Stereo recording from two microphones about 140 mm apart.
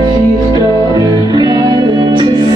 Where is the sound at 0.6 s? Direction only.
25° right (ahead or behind).